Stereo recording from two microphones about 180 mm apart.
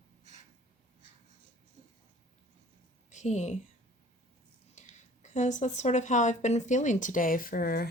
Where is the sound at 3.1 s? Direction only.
40° left (ahead or behind).